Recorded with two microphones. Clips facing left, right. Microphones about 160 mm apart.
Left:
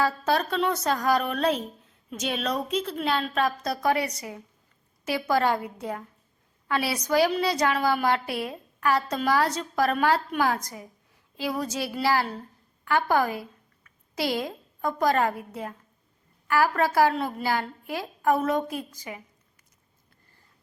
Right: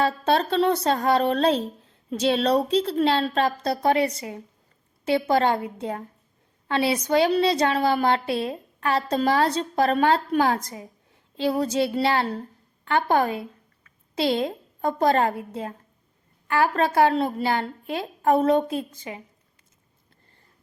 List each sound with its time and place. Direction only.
0.0 s a woman's voice: 25° right (ahead or behind)